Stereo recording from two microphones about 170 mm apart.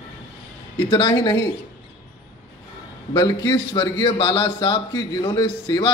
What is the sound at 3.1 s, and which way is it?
A man's voice, 25° left (ahead or behind).